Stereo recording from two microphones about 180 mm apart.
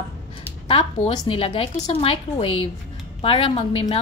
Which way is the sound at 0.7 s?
30° left (ahead or behind).